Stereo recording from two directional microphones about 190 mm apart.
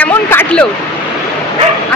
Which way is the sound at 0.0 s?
10° left (ahead or behind).